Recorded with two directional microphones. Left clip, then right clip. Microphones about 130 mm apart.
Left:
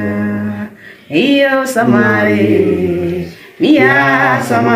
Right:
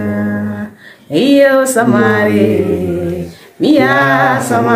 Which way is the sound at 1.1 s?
60° right (ahead or behind).